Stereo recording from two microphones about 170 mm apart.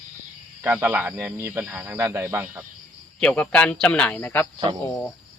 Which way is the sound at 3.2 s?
5° left (ahead or behind).